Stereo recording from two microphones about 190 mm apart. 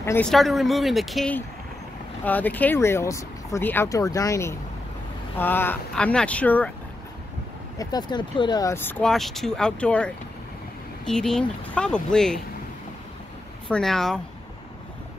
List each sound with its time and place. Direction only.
0.0 s speech: 10° left (ahead or behind)
0.3 s speech: centre (ahead or behind)
7.8 s speech: 20° left (ahead or behind); by 12.4 s 5° left (ahead or behind)
13.7 s speech: 5° left (ahead or behind)